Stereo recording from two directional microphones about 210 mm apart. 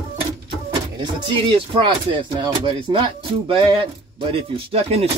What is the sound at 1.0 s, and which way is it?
Speech, 25° right (ahead or behind).